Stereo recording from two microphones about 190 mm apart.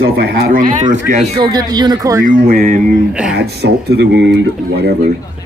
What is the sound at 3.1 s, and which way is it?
Speech, 5° right (ahead or behind).